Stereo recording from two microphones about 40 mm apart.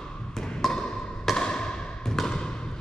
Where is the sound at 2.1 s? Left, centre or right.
Centre.